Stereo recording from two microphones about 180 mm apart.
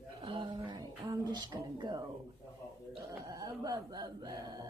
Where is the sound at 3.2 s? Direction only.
20° right (ahead or behind).